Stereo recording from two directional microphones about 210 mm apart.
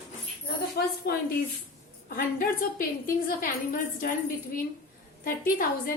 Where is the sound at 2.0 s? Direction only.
40° left (ahead or behind).